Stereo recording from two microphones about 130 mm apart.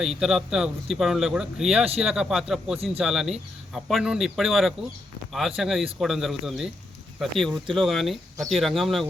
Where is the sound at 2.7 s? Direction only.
50° right (ahead or behind).